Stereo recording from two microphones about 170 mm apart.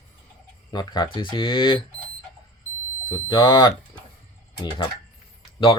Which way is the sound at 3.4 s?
25° left (ahead or behind).